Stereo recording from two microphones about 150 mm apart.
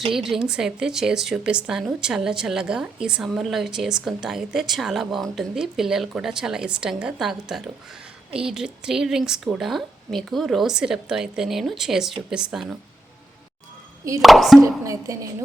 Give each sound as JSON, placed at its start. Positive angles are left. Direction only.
{"t": 0.1, "sound": "a woman's voice", "side_deg": -5}
{"t": 14.2, "sound": "a woman's voice", "side_deg": 0}
{"t": 14.6, "sound": "speech", "side_deg": -20}